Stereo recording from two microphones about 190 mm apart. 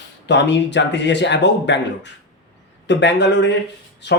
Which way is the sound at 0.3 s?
65° left (ahead or behind).